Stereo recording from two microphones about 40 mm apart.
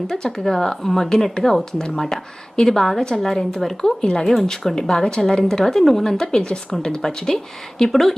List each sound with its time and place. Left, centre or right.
0.1 s a woman's voice: centre